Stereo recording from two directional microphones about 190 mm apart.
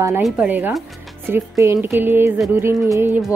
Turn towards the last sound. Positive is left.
turn(degrees=-15)  # may be behind; listen again after turning